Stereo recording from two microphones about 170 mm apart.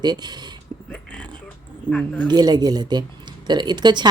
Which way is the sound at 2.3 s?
25° right (ahead or behind).